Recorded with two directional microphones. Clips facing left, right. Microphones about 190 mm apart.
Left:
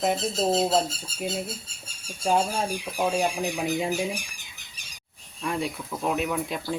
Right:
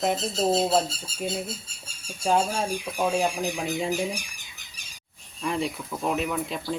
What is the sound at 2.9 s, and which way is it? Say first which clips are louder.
Speech: even; centre (ahead or behind).